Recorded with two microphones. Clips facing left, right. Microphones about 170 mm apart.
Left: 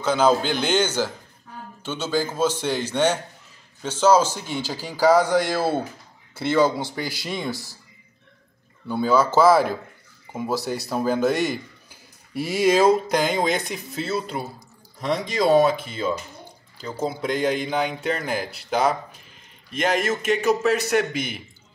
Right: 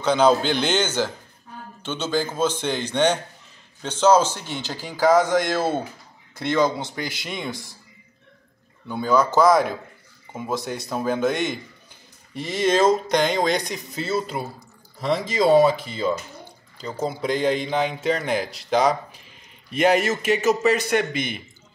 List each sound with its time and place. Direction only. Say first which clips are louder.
0.0 s a man's voice: right 1 dB; 5° left (ahead or behind)
6.8 s a man's voice: left 1 dB; 20° right (ahead or behind)
7.2 s a man's voice: left 2 dB; 5° left (ahead or behind)
8.8 s a man's voice: left 1 dB; 5° left (ahead or behind)